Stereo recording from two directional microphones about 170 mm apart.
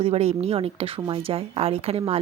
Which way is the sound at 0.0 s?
40° right (ahead or behind).